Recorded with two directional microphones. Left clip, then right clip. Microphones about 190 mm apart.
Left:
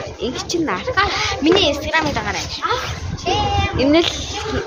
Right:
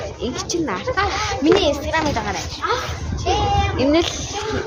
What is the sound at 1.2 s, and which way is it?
A child's voice, 30° right (ahead or behind).